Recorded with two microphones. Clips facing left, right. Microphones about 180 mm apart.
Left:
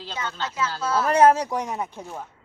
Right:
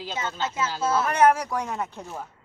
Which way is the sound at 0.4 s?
25° right (ahead or behind).